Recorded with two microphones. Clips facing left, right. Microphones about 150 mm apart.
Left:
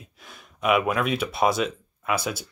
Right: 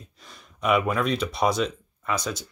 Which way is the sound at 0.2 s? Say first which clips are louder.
Left 1 dB; 5° left (ahead or behind).